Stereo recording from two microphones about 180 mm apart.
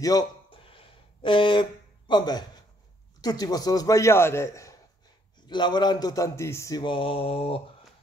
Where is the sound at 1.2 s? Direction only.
25° left (ahead or behind).